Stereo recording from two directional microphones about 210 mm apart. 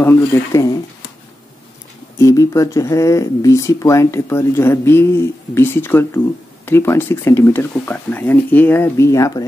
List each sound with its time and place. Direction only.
0.0 s speech: 15° left (ahead or behind)
2.1 s speech: 15° left (ahead or behind)